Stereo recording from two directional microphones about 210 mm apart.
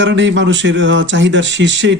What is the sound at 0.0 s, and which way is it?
Speech, 60° right (ahead or behind).